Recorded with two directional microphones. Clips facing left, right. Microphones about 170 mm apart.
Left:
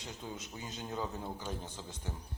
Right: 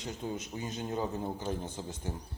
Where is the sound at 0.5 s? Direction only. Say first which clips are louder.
Right 7 dB; 45° right (ahead or behind).